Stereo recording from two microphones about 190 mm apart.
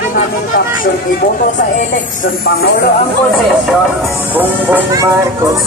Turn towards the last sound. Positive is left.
turn(degrees=-10)  # may be behind; listen again after turning